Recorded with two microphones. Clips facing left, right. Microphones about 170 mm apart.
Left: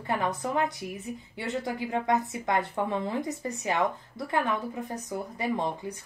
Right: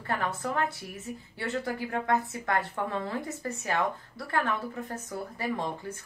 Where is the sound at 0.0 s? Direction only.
15° left (ahead or behind).